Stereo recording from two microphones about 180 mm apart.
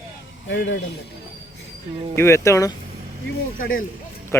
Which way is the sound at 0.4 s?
85° left.